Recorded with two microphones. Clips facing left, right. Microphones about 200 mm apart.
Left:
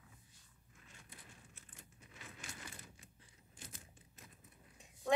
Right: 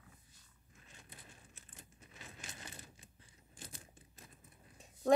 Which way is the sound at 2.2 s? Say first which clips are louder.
Even; 20° right (ahead or behind).